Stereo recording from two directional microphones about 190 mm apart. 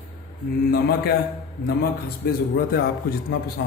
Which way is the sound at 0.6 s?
55° left (ahead or behind).